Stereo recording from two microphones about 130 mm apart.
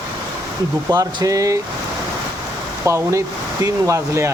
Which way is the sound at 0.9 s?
25° right (ahead or behind).